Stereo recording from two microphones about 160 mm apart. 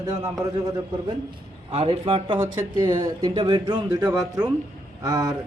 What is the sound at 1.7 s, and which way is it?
Speech, 35° right (ahead or behind).